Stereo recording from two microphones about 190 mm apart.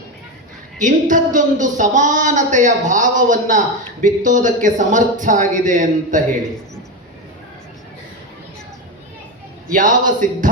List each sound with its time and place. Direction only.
0.8 s speech: 40° right (ahead or behind)
9.6 s speech: 45° right (ahead or behind)